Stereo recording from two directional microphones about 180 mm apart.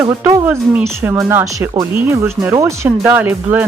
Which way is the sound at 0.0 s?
15° right (ahead or behind).